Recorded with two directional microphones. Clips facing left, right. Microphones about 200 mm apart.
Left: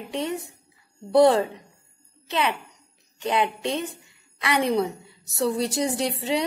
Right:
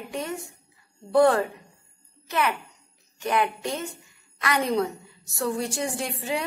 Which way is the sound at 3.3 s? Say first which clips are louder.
Left 1 dB; 20° left (ahead or behind).